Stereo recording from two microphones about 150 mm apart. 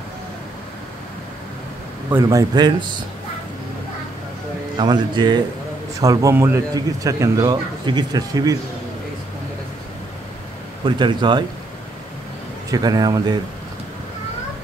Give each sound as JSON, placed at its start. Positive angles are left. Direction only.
{"t": 2.0, "sound": "a man's voice", "side_deg": -25}
{"t": 4.7, "sound": "a man's voice", "side_deg": -30}
{"t": 10.9, "sound": "speech", "side_deg": -30}
{"t": 12.7, "sound": "a man's voice", "side_deg": -25}